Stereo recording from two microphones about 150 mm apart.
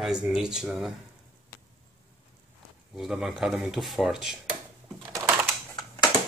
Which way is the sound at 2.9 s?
5° right (ahead or behind).